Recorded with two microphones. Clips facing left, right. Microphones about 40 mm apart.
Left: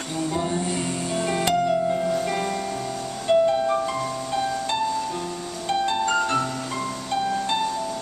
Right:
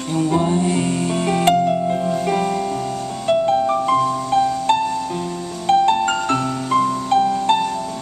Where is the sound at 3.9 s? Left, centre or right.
Right.